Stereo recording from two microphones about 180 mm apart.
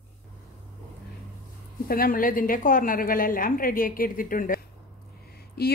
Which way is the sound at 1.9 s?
55° left (ahead or behind).